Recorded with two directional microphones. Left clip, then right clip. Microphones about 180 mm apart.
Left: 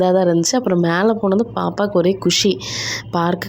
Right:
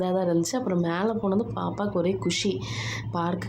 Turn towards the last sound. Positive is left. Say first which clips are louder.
# left 10 dB
turn(degrees=40)  # may be behind; listen again after turning